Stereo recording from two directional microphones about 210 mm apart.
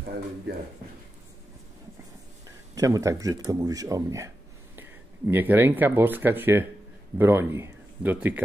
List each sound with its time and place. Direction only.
2.4 s speech: 15° right (ahead or behind)
5.3 s speech: 10° right (ahead or behind)